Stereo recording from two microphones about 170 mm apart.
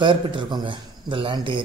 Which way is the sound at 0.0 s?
30° right (ahead or behind).